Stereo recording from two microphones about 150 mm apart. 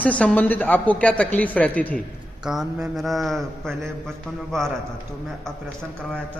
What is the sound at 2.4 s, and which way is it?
Mantra, 5° right (ahead or behind).